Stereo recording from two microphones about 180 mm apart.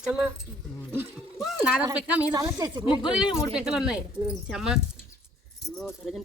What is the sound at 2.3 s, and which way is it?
Speech, 20° right (ahead or behind).